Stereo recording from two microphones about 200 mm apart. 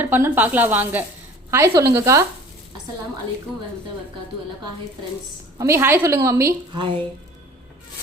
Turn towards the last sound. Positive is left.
turn(degrees=-25)  # may be behind; listen again after turning